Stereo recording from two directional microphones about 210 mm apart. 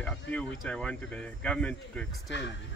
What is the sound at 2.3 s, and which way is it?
Speech, 55° left (ahead or behind).